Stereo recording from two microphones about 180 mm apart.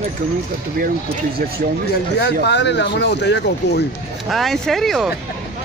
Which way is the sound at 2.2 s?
70° left (ahead or behind).